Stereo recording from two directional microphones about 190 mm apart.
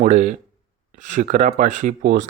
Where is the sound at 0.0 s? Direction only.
40° right (ahead or behind).